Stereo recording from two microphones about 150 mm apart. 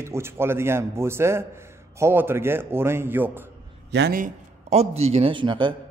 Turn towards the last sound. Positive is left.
turn(degrees=-30)  # may be behind; listen again after turning